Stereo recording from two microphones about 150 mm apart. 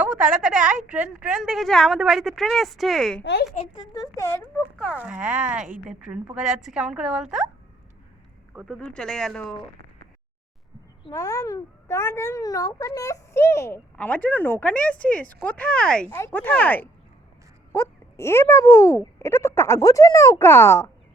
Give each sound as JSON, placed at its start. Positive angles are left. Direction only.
{"t": 0.0, "sound": "a woman's voice", "side_deg": -10}
{"t": 3.9, "sound": "speech", "side_deg": 25}
{"t": 4.9, "sound": "a woman's voice", "side_deg": -10}
{"t": 8.5, "sound": "a woman's voice", "side_deg": 0}
{"t": 11.1, "sound": "a child's voice", "side_deg": 20}